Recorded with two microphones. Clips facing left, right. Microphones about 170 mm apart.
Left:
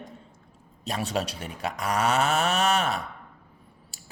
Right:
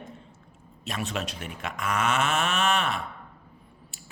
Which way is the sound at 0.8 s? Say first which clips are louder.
Left 3 dB; 35° left (ahead or behind).